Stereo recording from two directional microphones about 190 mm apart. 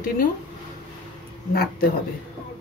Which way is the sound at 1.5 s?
50° left (ahead or behind).